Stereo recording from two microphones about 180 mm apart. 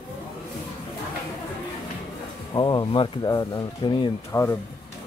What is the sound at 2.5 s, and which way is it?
Speech, 25° left (ahead or behind).